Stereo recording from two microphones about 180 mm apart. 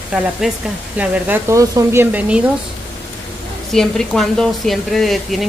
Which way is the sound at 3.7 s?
5° left (ahead or behind).